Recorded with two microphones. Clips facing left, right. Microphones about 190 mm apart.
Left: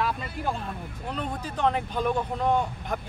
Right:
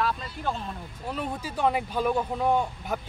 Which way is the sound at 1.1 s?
10° right (ahead or behind).